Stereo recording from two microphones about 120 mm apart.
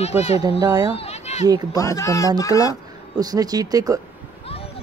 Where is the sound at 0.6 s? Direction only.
35° right (ahead or behind).